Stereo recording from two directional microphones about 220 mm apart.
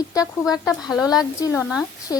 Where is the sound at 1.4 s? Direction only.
10° left (ahead or behind).